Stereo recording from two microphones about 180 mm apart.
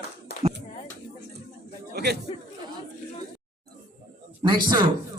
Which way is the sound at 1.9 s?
65° right (ahead or behind).